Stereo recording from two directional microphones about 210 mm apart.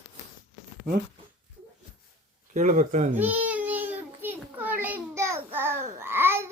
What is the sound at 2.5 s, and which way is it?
Speech, 35° right (ahead or behind).